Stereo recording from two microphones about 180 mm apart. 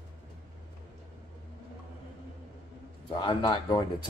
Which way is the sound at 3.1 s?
25° left (ahead or behind).